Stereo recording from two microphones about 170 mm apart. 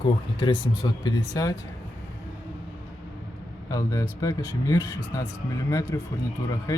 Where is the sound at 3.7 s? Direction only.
20° left (ahead or behind).